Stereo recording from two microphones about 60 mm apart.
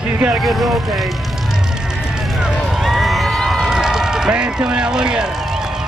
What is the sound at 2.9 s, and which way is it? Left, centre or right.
Run, centre.